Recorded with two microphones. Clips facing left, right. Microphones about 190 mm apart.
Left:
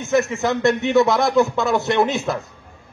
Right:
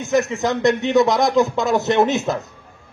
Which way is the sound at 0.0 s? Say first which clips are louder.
Even; 15° right (ahead or behind).